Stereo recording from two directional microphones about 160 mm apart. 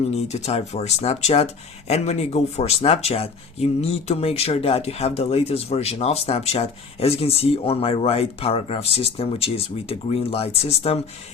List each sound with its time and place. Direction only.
0.0 s speech: 40° left (ahead or behind)